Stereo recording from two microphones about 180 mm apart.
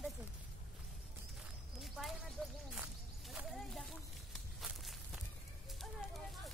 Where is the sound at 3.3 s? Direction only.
Centre (ahead or behind).